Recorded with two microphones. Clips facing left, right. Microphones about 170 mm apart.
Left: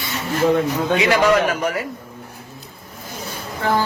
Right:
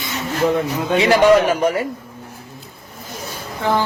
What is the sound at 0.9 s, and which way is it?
Speech, 30° right (ahead or behind).